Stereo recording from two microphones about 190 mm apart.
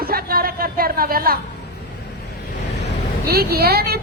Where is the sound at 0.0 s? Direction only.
50° right (ahead or behind).